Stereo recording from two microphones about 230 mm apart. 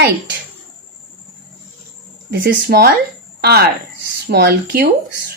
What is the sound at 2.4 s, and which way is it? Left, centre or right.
A woman's voice, right.